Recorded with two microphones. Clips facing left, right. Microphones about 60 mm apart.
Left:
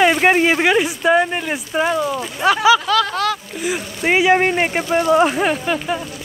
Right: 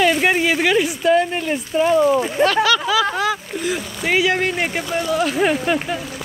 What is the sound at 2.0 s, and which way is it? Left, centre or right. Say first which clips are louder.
Speech: right 7 dB; right.